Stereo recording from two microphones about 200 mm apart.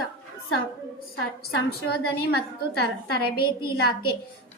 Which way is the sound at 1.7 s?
55° left (ahead or behind).